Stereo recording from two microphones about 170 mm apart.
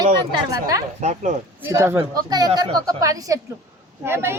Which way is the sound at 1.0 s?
45° right (ahead or behind).